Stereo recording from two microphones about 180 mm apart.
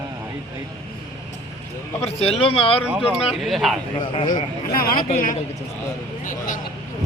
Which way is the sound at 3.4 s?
Centre (ahead or behind).